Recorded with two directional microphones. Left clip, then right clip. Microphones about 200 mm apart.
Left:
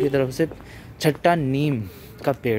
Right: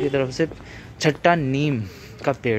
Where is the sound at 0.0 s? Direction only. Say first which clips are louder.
Left 1 dB; 20° left (ahead or behind).